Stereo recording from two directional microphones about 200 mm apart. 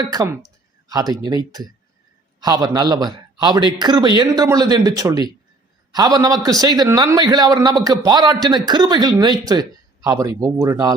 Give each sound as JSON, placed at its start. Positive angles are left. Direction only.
{"t": 0.0, "sound": "a man's voice", "side_deg": -20}